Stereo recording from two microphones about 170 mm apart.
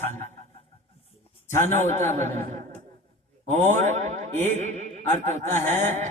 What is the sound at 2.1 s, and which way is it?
Speech, 45° right (ahead or behind).